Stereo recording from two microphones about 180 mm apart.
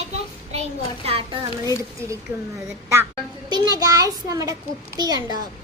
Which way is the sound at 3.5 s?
20° right (ahead or behind).